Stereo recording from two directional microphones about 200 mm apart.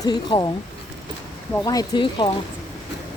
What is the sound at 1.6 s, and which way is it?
Speech, 20° left (ahead or behind).